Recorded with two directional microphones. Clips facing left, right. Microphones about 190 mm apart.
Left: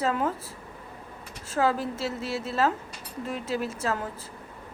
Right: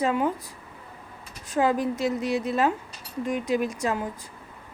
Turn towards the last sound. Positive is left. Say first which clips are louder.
# right 3 dB
turn(degrees=-15)  # may be behind; listen again after turning